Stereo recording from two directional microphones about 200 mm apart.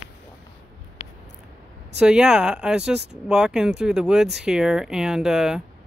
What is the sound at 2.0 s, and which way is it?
Speech, 5° right (ahead or behind).